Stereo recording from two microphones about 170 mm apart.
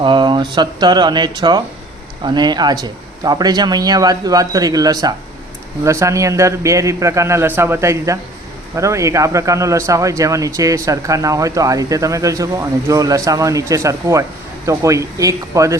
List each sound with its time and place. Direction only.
0.0 s a man's voice: 30° right (ahead or behind)